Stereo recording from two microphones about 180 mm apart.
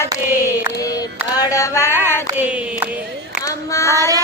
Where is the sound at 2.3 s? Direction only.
10° right (ahead or behind).